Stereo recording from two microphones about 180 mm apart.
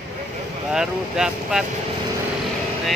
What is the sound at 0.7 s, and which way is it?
Speech, 5° right (ahead or behind).